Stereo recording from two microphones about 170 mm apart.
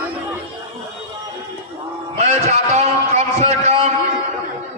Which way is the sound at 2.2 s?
40° right (ahead or behind).